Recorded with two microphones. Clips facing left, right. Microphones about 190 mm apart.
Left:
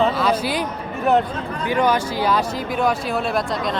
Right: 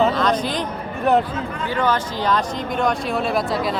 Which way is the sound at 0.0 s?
5° left (ahead or behind).